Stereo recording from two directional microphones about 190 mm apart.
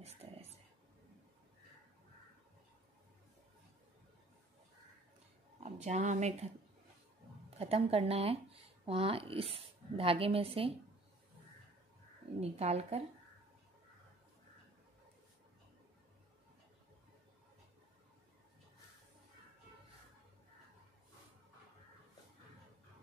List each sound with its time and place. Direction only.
0.0 s a sound: 30° right (ahead or behind)
5.6 s speech: 35° right (ahead or behind)
7.5 s speech: 30° right (ahead or behind)
12.4 s a woman's voice: 35° right (ahead or behind)